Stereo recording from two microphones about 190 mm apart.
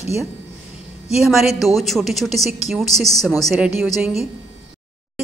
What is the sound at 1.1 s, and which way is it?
A woman's voice, centre (ahead or behind).